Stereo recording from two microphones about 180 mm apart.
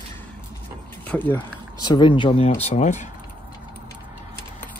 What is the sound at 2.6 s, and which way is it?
Speech, 40° left (ahead or behind).